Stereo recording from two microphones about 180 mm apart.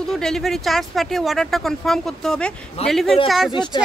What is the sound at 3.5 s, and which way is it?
Speech, 25° left (ahead or behind).